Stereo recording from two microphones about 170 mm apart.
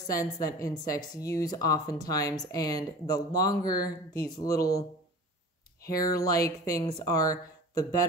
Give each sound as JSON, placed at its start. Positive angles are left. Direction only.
{"t": 0.0, "sound": "speech", "side_deg": 20}
{"t": 5.9, "sound": "speech", "side_deg": 20}